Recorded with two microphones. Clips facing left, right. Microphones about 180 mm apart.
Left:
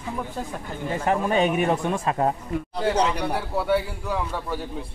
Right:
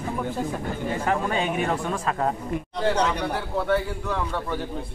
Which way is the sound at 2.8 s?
10° left (ahead or behind).